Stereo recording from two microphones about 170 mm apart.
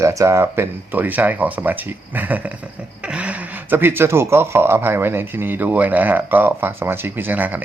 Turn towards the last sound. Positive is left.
turn(degrees=-10)  # may be behind; listen again after turning